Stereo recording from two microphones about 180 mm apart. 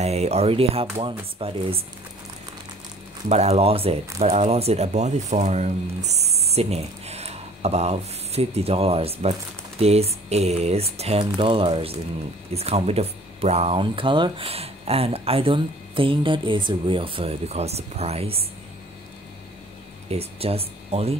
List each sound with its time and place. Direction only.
0.0 s speech: 35° right (ahead or behind)
3.3 s speech: 35° right (ahead or behind)
20.1 s speech: 35° right (ahead or behind)